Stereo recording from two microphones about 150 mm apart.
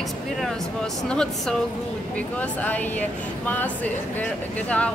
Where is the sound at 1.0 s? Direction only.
5° left (ahead or behind).